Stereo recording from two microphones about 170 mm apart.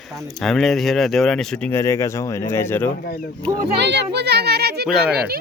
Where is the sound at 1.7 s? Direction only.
15° left (ahead or behind).